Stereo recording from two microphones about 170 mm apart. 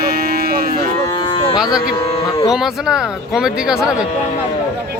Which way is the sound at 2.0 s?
30° left (ahead or behind).